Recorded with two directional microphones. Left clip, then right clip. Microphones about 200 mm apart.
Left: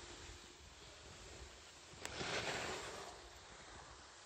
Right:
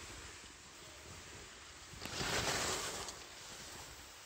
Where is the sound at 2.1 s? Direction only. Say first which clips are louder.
Right 5 dB; 50° right (ahead or behind).